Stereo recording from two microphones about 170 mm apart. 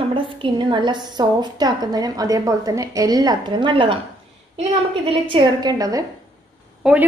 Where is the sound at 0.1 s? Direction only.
30° right (ahead or behind).